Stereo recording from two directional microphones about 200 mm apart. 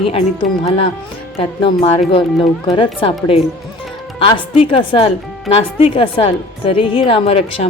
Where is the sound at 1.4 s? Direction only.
25° left (ahead or behind).